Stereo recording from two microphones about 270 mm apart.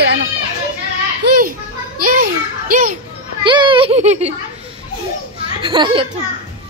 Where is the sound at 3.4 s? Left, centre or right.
Centre.